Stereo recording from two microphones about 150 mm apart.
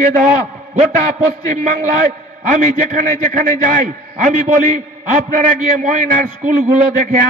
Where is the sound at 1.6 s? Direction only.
55° right (ahead or behind).